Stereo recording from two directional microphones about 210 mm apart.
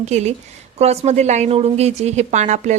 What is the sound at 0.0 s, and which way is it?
A woman's voice, 30° right (ahead or behind).